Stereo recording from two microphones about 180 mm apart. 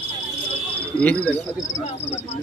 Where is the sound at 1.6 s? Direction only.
40° left (ahead or behind).